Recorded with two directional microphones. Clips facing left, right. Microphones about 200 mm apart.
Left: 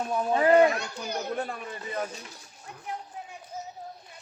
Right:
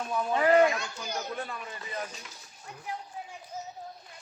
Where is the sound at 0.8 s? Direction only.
65° left (ahead or behind).